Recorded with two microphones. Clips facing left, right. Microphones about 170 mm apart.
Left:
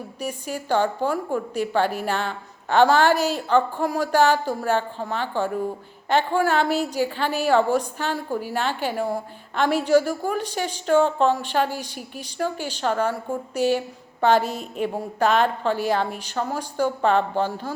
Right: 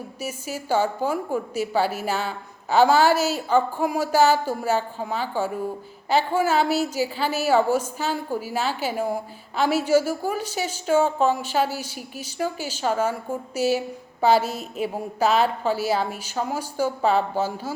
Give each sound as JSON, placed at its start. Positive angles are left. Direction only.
{"t": 0.2, "sound": "a woman's voice", "side_deg": -5}
{"t": 11.7, "sound": "a woman's voice", "side_deg": -40}
{"t": 12.4, "sound": "a woman's voice", "side_deg": -5}